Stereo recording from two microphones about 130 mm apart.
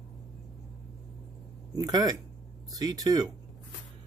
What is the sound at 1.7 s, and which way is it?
Speech, 30° right (ahead or behind).